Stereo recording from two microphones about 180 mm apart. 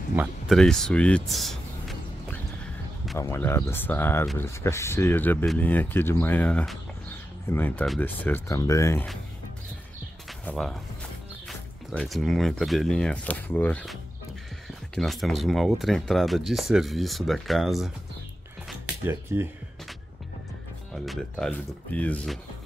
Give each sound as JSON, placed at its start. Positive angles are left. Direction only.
{"t": 0.1, "sound": "a sound", "side_deg": -5}
{"t": 3.2, "sound": "speech", "side_deg": 15}
{"t": 10.4, "sound": "speech", "side_deg": 5}
{"t": 15.0, "sound": "speech", "side_deg": 0}
{"t": 19.0, "sound": "speech", "side_deg": -15}
{"t": 20.9, "sound": "speech", "side_deg": 0}